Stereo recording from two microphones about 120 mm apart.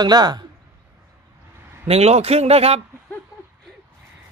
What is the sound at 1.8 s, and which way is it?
Speech, 60° right (ahead or behind).